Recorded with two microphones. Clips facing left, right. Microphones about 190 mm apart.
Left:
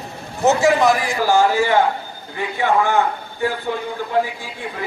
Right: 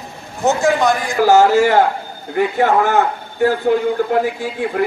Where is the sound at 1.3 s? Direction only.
45° right (ahead or behind).